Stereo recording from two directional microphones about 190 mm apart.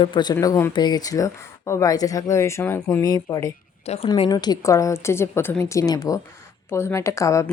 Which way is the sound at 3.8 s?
35° left (ahead or behind).